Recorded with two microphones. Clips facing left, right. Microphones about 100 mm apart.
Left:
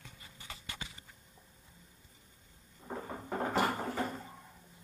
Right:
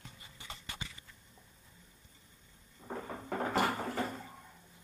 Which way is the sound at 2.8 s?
40° left (ahead or behind).